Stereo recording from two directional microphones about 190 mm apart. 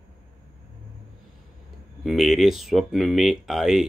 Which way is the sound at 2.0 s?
Centre (ahead or behind).